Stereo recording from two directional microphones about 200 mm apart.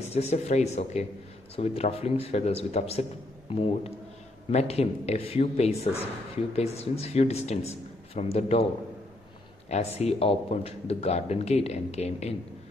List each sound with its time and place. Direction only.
0.1 s a man's voice: 30° left (ahead or behind)
9.7 s a man's voice: 30° left (ahead or behind)